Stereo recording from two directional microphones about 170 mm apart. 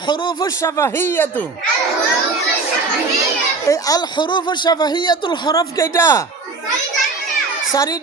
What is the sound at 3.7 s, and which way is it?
Speech, 20° left (ahead or behind).